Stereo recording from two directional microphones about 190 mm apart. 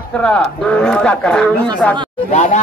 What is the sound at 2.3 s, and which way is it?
Speech, 40° left (ahead or behind).